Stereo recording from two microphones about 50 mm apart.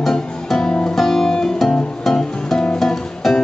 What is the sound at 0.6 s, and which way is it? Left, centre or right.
Music, centre.